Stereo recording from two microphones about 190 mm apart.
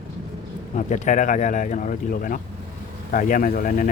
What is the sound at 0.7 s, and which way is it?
Speech, 40° left (ahead or behind).